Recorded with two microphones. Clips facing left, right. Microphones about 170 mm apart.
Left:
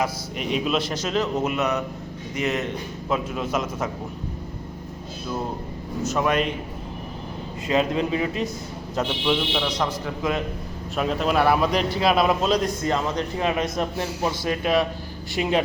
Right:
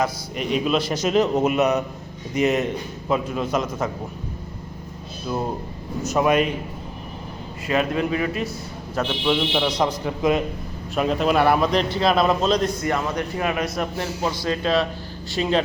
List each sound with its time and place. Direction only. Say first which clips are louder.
0.0 s a man's voice: right 2 dB; centre (ahead or behind)
0.9 s a man's voice: right 5 dB; 15° right (ahead or behind)
3.1 s a man's voice: right 3 dB; centre (ahead or behind)
6.1 s a man's voice: right 4 dB; 10° right (ahead or behind)
7.7 s speech: even; 25° left (ahead or behind)
9.2 s a man's voice: right 4 dB; 5° right (ahead or behind)
10.9 s a man's voice: right 2 dB; centre (ahead or behind)
12.8 s a man's voice: even; 25° left (ahead or behind)